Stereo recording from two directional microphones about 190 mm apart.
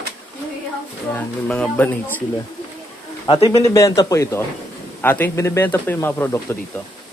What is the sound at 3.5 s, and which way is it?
Speech, 15° left (ahead or behind).